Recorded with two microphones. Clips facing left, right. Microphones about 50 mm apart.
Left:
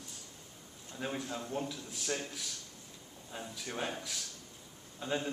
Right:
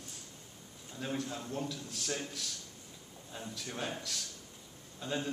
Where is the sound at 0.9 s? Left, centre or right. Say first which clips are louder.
Even; centre.